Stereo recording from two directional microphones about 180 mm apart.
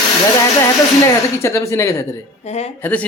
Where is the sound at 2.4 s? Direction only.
35° left (ahead or behind).